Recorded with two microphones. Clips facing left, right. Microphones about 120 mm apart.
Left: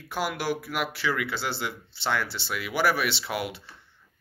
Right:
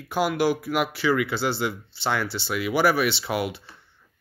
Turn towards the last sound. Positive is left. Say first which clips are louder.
# right 4 dB
turn(degrees=-5)  # may be behind; listen again after turning